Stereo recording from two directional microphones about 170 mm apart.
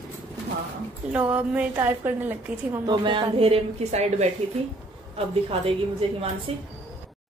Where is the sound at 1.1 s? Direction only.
10° right (ahead or behind).